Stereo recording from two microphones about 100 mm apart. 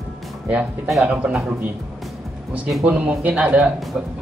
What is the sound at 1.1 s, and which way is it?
Speech, 15° right (ahead or behind).